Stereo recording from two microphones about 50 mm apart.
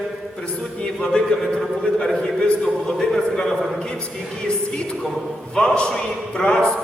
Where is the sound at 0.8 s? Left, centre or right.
Centre.